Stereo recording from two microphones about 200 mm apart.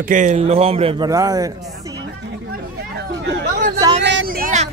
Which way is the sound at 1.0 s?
20° right (ahead or behind).